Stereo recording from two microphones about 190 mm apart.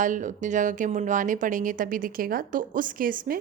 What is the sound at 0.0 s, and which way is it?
A woman's voice, 45° right (ahead or behind).